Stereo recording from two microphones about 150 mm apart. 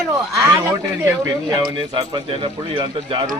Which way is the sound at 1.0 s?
20° right (ahead or behind).